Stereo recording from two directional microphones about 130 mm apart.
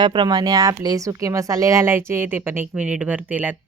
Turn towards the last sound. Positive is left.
turn(degrees=-10)  # may be behind; listen again after turning